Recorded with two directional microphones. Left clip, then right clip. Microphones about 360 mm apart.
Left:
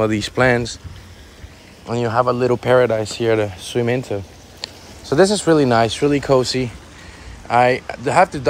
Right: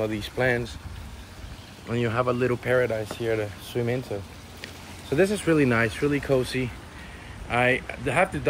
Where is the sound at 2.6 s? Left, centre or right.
Centre.